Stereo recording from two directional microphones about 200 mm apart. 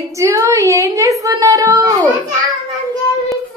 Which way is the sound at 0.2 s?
15° right (ahead or behind).